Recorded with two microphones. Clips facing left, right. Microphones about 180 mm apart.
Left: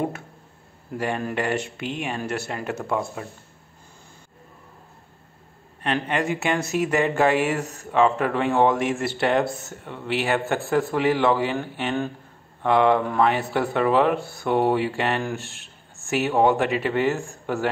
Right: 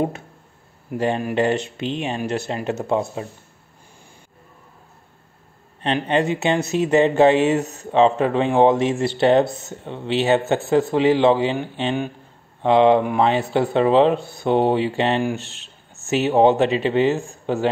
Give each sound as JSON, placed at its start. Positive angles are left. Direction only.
{"t": 0.8, "sound": "speech", "side_deg": -25}
{"t": 6.0, "sound": "speech", "side_deg": -25}